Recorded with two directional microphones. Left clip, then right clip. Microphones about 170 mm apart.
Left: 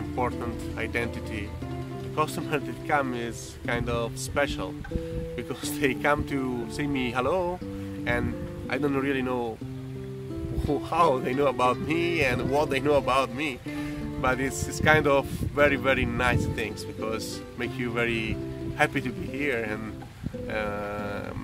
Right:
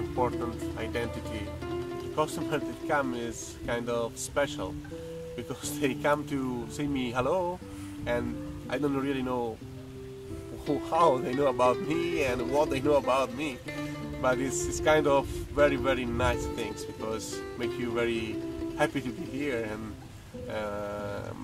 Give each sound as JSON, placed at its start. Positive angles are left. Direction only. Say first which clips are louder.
{"t": 2.1, "sound": "speech", "louder": "left 2 dB", "side_deg": 10}
{"t": 5.8, "sound": "speech", "louder": "left 3 dB", "side_deg": 10}
{"t": 10.7, "sound": "speech", "louder": "left 1 dB", "side_deg": 10}
{"t": 17.9, "sound": "speech", "louder": "left 4 dB", "side_deg": 10}
{"t": 20.5, "sound": "a sound", "louder": "left 3 dB", "side_deg": 15}